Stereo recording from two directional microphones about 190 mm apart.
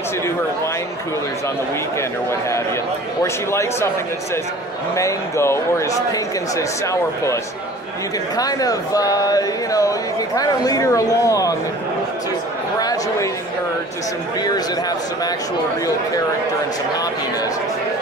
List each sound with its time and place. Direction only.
4.9 s speech: 15° left (ahead or behind)
8.4 s speech: 20° left (ahead or behind)
12.7 s a sound: 20° left (ahead or behind)